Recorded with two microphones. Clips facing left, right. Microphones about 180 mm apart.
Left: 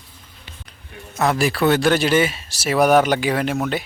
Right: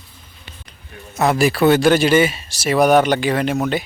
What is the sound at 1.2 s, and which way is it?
Speech, 5° right (ahead or behind).